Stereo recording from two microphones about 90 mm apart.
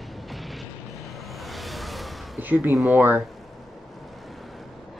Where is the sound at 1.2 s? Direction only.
Centre (ahead or behind).